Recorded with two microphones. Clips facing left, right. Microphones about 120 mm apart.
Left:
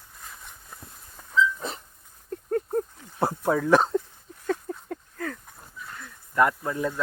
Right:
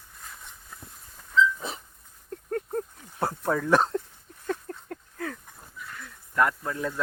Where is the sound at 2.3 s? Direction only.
5° left (ahead or behind).